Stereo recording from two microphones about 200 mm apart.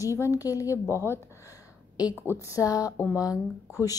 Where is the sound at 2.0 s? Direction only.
5° right (ahead or behind).